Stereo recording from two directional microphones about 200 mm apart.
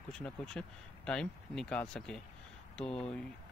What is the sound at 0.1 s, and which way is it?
Speech, 5° left (ahead or behind).